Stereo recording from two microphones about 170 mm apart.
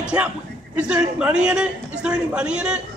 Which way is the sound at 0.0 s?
5° right (ahead or behind).